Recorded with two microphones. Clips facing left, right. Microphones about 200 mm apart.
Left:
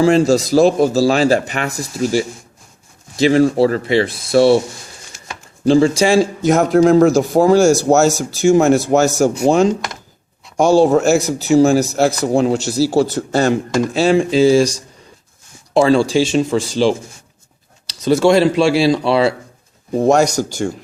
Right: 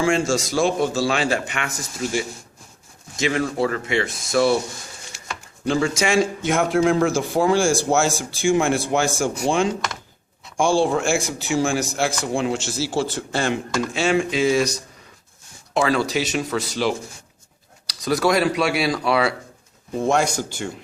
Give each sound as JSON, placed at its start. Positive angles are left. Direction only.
{"t": 0.0, "sound": "speech", "side_deg": 35}
{"t": 5.6, "sound": "speech", "side_deg": 30}
{"t": 19.9, "sound": "speech", "side_deg": 40}